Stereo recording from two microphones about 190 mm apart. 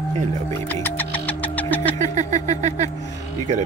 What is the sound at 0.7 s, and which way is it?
Music, 10° left (ahead or behind).